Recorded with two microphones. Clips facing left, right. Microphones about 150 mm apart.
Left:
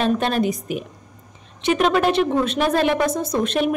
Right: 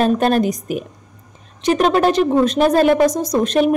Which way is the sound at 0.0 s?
45° right (ahead or behind).